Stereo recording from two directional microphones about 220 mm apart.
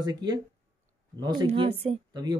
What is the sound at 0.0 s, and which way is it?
Speech, 20° right (ahead or behind).